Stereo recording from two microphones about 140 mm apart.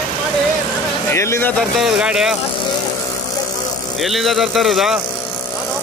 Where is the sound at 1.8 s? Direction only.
5° right (ahead or behind).